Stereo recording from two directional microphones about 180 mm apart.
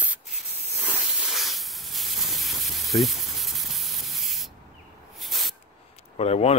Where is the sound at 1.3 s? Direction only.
Centre (ahead or behind).